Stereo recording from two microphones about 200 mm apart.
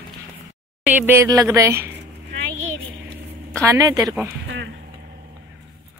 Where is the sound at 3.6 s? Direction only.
15° right (ahead or behind).